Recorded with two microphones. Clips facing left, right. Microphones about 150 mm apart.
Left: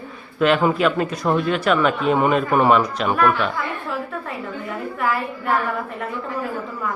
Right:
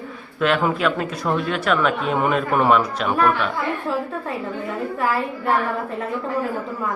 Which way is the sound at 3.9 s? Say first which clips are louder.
Right 4 dB; 30° right (ahead or behind).